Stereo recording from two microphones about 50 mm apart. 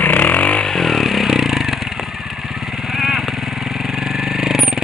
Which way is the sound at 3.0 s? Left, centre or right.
Centre.